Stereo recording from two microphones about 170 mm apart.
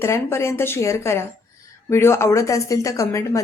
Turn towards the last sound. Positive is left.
turn(degrees=20)  # may be behind; listen again after turning